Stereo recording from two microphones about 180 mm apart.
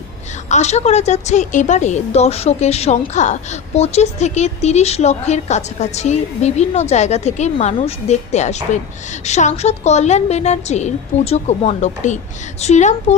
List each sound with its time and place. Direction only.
0.4 s a woman's voice: 40° left (ahead or behind)